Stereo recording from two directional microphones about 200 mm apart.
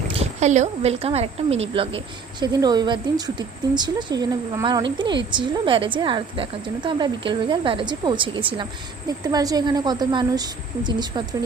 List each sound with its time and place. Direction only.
0.1 s a woman's voice: 30° right (ahead or behind)